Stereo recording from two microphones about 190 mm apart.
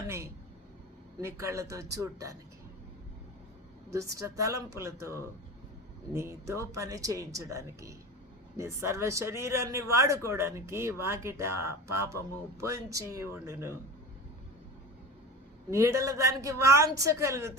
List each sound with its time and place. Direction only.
1.2 s speech: 15° right (ahead or behind)
3.8 s speech: 15° right (ahead or behind)
15.7 s speech: 15° right (ahead or behind)